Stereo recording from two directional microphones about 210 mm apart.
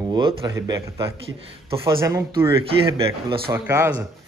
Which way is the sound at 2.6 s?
25° right (ahead or behind).